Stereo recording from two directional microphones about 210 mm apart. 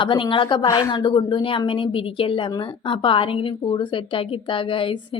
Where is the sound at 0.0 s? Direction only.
25° left (ahead or behind).